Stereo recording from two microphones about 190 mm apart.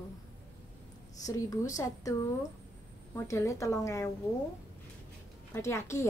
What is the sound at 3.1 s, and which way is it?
Speech, 15° left (ahead or behind).